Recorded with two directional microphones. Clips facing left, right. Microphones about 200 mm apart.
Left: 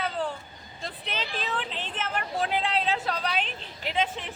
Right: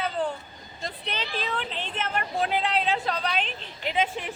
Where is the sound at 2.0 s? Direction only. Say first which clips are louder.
Right 2 dB; centre (ahead or behind).